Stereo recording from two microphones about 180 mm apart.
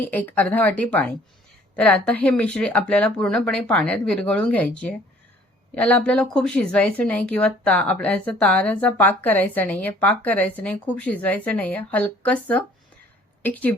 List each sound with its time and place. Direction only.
0.0 s a woman's voice: 10° left (ahead or behind)